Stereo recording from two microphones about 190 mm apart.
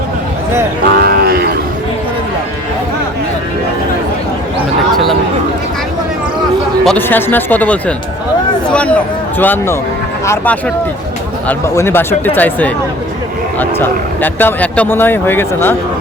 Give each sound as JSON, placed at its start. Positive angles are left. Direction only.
{"t": 0.9, "sound": "cattle", "side_deg": -55}
{"t": 6.8, "sound": "speech", "side_deg": 10}